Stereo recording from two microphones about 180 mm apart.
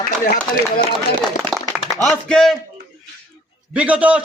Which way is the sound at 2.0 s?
Centre (ahead or behind).